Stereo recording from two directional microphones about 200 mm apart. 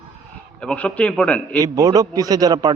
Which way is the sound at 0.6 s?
5° left (ahead or behind).